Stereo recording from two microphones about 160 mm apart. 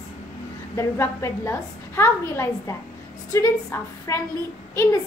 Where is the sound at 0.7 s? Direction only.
15° left (ahead or behind).